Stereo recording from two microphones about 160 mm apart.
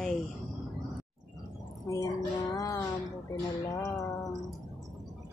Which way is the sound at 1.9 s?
20° left (ahead or behind).